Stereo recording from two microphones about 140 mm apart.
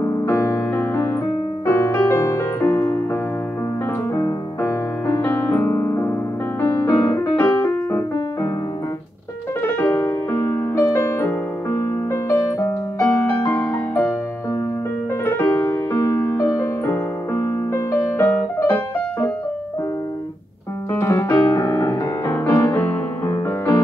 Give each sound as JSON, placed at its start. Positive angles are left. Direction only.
{"t": 0.0, "sound": "piano", "side_deg": 20}
{"t": 1.7, "sound": "music", "side_deg": 15}
{"t": 4.1, "sound": "music", "side_deg": 25}
{"t": 6.6, "sound": "piano", "side_deg": 15}
{"t": 7.3, "sound": "music", "side_deg": 20}
{"t": 9.6, "sound": "music", "side_deg": 15}
{"t": 15.2, "sound": "music", "side_deg": 15}
{"t": 20.9, "sound": "piano", "side_deg": 20}